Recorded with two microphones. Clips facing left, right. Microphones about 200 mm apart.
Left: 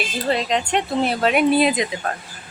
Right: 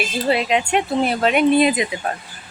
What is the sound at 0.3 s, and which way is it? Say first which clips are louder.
Speech: right 2 dB; 10° right (ahead or behind).